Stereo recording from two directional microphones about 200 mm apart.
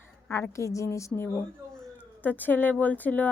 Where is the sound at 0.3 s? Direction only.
15° left (ahead or behind).